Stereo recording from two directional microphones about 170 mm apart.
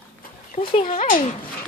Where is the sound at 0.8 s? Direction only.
50° left (ahead or behind).